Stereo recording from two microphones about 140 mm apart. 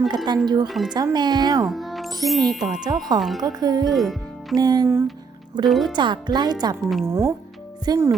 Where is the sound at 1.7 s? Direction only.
Centre (ahead or behind).